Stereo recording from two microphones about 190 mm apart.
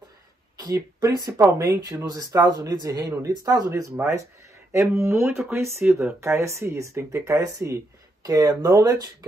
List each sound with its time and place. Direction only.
0.6 s speech: 20° right (ahead or behind)